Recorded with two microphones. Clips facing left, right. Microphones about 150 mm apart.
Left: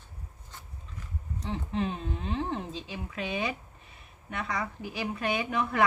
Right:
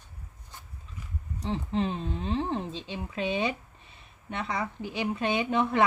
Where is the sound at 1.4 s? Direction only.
30° right (ahead or behind).